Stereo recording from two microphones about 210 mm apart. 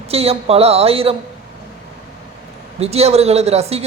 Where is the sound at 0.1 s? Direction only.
30° right (ahead or behind).